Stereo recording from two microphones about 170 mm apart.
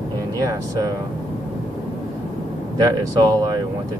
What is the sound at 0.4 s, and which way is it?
Speech, 20° right (ahead or behind).